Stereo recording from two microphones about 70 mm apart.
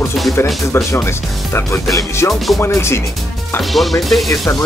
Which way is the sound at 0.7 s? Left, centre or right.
Left.